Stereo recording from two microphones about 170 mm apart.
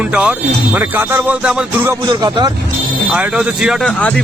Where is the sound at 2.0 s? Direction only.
25° right (ahead or behind).